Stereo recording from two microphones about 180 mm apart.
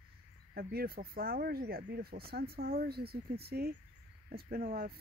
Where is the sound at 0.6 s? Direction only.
60° right (ahead or behind).